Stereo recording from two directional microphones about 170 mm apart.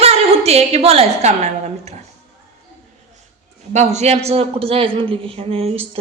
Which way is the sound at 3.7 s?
40° right (ahead or behind).